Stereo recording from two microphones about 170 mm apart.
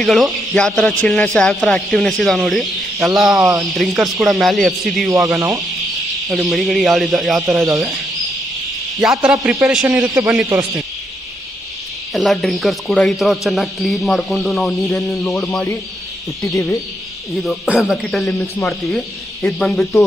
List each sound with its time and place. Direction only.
0.0 s speech: centre (ahead or behind)
3.3 s a man's voice: 20° right (ahead or behind)
3.7 s speech: centre (ahead or behind)
6.2 s speech: centre (ahead or behind)
10.0 s a man's voice: 20° right (ahead or behind)
12.1 s speech: centre (ahead or behind)
16.4 s speech: 15° left (ahead or behind)
17.6 s speech: 5° right (ahead or behind)